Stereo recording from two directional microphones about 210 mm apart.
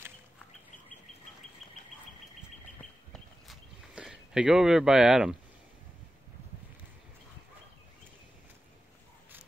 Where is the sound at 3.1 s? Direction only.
Centre (ahead or behind).